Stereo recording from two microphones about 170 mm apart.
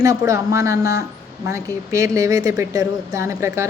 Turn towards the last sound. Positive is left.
turn(degrees=-15)  # may be behind; listen again after turning